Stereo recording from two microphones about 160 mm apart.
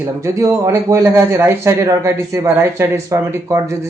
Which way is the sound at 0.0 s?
20° right (ahead or behind).